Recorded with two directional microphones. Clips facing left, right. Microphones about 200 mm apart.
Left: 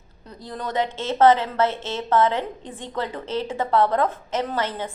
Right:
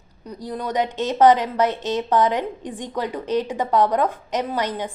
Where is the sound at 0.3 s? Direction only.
15° right (ahead or behind).